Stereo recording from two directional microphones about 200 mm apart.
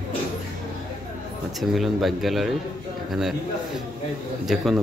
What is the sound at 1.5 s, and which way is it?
Speech, centre (ahead or behind).